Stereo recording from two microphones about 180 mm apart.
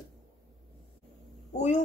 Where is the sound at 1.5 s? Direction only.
40° left (ahead or behind).